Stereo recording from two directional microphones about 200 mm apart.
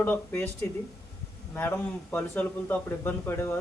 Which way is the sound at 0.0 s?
10° left (ahead or behind).